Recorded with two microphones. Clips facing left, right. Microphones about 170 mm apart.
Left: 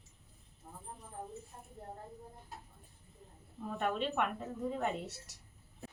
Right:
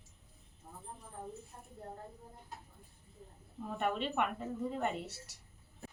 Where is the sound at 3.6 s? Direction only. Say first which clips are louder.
Even; centre (ahead or behind).